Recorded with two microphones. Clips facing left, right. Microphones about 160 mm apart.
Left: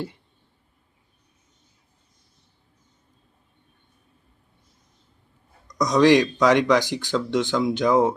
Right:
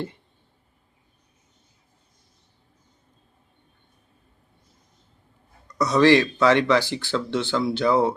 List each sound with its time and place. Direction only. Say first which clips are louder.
5.6 s speech: left 1 dB; 15° left (ahead or behind)